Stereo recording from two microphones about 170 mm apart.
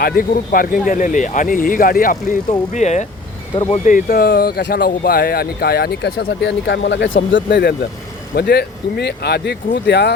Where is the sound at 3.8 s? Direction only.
55° left (ahead or behind).